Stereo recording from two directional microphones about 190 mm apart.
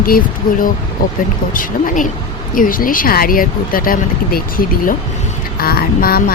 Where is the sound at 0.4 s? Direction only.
50° left (ahead or behind).